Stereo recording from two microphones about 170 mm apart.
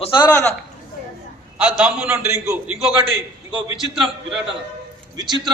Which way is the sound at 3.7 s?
Centre (ahead or behind).